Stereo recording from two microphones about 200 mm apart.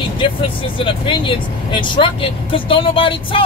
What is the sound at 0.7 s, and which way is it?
Speech, 25° left (ahead or behind).